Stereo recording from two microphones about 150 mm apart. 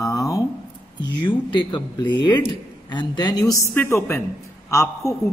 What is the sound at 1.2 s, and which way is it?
A woman's voice, 30° left (ahead or behind).